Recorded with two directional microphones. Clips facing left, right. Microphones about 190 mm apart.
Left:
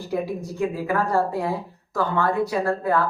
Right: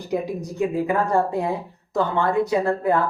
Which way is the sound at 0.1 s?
20° right (ahead or behind).